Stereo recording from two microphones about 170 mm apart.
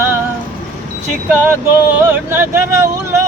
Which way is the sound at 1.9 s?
15° right (ahead or behind).